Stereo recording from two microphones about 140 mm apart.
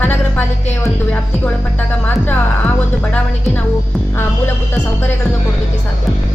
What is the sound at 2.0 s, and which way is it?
Speech, 10° left (ahead or behind).